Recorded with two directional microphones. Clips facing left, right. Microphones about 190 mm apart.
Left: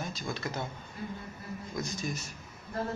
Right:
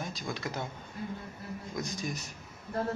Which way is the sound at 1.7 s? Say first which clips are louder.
Left 1 dB; 15° right (ahead or behind).